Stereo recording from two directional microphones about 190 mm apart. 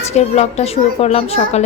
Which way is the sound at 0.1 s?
35° left (ahead or behind).